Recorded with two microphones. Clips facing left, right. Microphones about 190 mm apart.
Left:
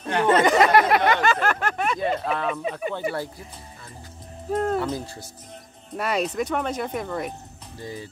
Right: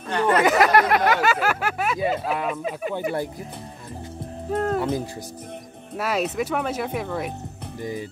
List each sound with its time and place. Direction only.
0.4 s a sound: 5° right (ahead or behind)
4.5 s speech: 5° right (ahead or behind)
5.9 s speech: 5° right (ahead or behind)
7.8 s speech: 15° right (ahead or behind)